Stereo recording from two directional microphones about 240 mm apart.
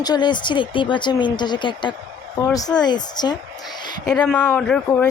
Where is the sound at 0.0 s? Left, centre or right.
Centre.